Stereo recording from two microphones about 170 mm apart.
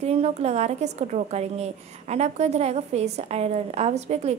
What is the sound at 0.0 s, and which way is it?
A woman's voice, 40° right (ahead or behind).